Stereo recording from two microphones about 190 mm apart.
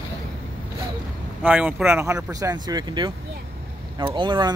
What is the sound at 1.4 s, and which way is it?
Speech, 10° right (ahead or behind).